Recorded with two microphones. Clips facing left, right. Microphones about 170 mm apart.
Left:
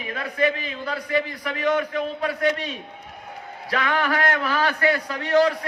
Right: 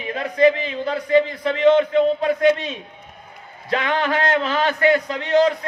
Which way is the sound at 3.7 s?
25° right (ahead or behind).